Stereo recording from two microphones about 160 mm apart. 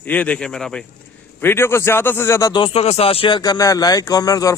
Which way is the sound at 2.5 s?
30° left (ahead or behind).